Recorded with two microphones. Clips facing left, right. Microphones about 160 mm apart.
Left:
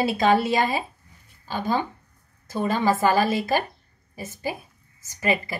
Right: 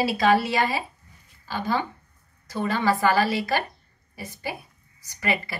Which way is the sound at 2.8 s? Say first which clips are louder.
Left 1 dB; 20° left (ahead or behind).